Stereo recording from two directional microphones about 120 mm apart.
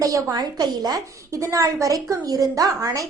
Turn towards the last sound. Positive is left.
turn(degrees=-30)  # may be behind; listen again after turning